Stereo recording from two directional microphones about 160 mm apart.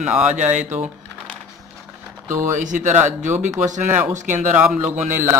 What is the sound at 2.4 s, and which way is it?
Speech, 55° right (ahead or behind).